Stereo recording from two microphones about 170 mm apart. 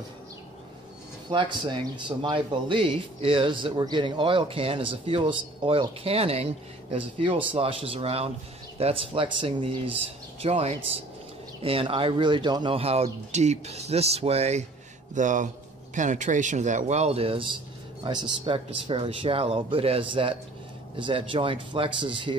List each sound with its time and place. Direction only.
1.3 s a man's voice: 30° right (ahead or behind)